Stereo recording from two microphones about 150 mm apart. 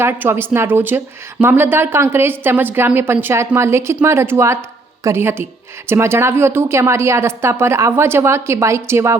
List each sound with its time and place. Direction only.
0.0 s a woman's voice: 15° right (ahead or behind)